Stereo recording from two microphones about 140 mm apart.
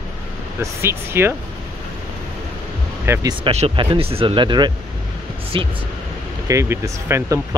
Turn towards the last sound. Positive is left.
turn(degrees=-20)  # may be behind; listen again after turning